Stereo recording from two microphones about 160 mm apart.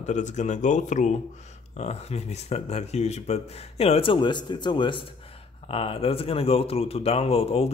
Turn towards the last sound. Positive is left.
turn(degrees=40)  # may be behind; listen again after turning